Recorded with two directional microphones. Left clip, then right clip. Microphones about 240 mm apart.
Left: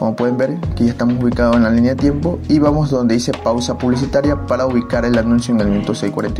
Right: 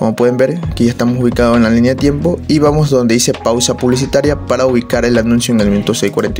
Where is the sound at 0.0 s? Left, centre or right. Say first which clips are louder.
Right 5 dB; right.